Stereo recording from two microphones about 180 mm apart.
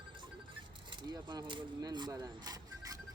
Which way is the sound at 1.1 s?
25° right (ahead or behind).